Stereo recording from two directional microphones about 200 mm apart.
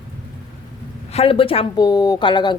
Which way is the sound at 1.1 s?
30° left (ahead or behind).